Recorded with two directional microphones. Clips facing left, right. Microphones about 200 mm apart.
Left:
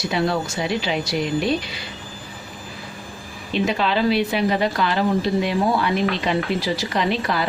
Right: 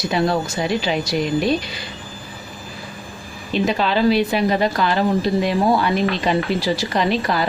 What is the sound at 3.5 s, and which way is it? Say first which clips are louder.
A woman's voice: right 2 dB; 40° right (ahead or behind).